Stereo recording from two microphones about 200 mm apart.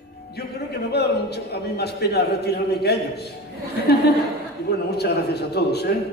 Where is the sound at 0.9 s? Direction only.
55° left (ahead or behind).